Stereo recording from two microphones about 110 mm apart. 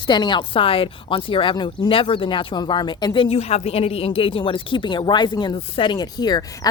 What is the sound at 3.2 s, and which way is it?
Speech, 70° left (ahead or behind).